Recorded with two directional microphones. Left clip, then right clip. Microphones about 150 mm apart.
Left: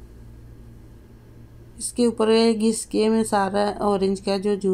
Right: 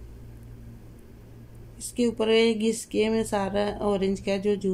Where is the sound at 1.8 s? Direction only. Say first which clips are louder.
Left 5 dB; 30° left (ahead or behind).